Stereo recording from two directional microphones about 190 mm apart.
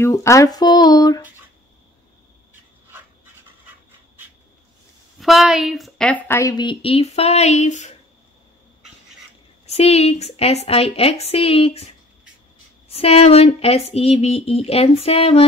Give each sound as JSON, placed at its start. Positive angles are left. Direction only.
{"t": 0.0, "sound": "a woman's voice", "side_deg": 15}
{"t": 5.2, "sound": "a woman's voice", "side_deg": 0}
{"t": 9.7, "sound": "speech", "side_deg": 35}